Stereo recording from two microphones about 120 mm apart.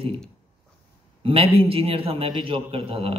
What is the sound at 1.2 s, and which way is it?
A man's voice, 50° right (ahead or behind).